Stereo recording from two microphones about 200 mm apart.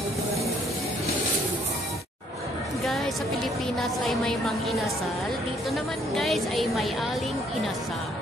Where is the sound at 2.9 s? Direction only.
Centre (ahead or behind).